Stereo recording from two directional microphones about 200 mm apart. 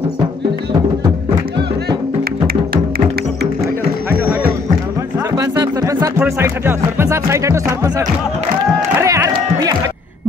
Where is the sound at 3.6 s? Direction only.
10° right (ahead or behind).